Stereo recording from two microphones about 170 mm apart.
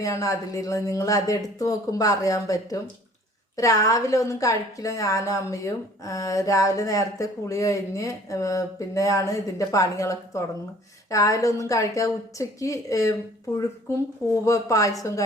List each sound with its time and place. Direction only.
0.0 s a woman's voice: 20° left (ahead or behind)
14.4 s a woman's voice: 20° left (ahead or behind)